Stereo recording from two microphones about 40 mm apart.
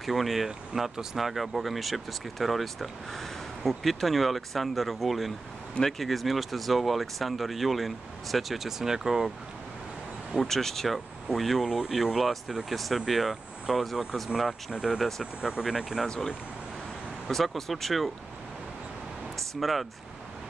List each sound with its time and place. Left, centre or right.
0.0 s speech: centre
10.3 s speech: centre
14.3 s speech: centre
17.3 s speech: centre
19.3 s speech: centre